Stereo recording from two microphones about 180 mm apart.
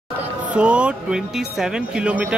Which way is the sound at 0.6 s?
5° right (ahead or behind).